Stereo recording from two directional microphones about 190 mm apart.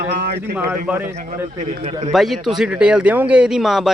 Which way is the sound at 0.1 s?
55° right (ahead or behind).